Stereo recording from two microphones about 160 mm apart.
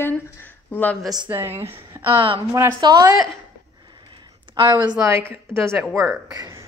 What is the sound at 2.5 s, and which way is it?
Speech, 20° right (ahead or behind).